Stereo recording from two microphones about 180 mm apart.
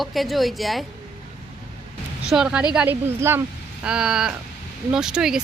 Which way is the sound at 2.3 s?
5° right (ahead or behind).